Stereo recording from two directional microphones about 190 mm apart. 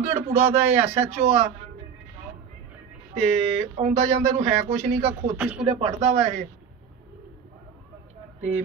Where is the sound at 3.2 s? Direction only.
35° right (ahead or behind).